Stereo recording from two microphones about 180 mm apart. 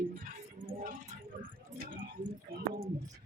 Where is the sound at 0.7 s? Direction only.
45° right (ahead or behind).